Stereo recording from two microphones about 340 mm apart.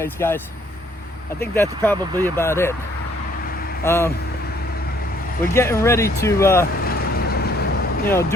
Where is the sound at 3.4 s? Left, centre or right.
Left.